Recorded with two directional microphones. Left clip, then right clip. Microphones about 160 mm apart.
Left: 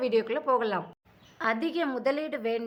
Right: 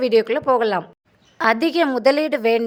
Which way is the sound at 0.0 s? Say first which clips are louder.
Right 9 dB; 45° right (ahead or behind).